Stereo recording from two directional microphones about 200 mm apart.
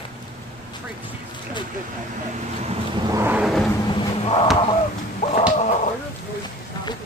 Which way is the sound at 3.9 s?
25° left (ahead or behind).